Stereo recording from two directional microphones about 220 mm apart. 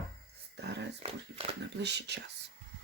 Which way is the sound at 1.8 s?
50° right (ahead or behind).